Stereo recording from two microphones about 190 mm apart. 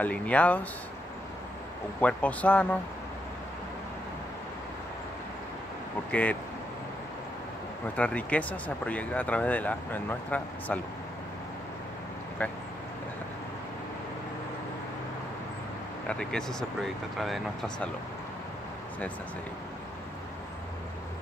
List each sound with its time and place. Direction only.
0.0 s speech: 10° left (ahead or behind)
2.0 s speech: 10° left (ahead or behind)
7.8 s speech: 10° left (ahead or behind)
12.4 s speech: 10° left (ahead or behind)
16.1 s speech: 5° left (ahead or behind)